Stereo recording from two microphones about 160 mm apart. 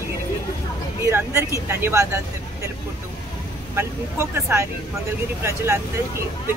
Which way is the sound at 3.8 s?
15° right (ahead or behind).